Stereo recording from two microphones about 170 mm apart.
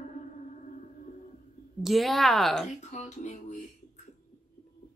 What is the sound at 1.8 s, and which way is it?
Speech, centre (ahead or behind).